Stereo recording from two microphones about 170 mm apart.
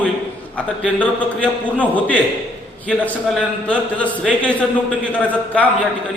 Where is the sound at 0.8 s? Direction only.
5° left (ahead or behind).